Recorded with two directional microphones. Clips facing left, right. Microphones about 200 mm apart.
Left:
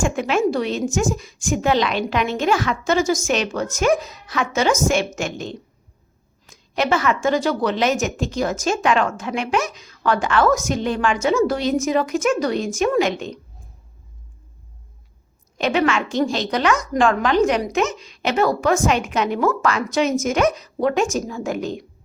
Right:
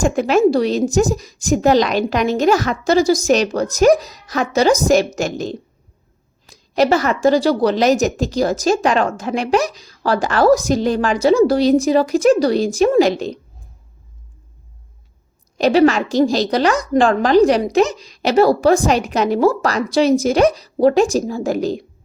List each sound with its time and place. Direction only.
0.0 s a woman's voice: 40° right (ahead or behind)
15.5 s a woman's voice: 35° right (ahead or behind)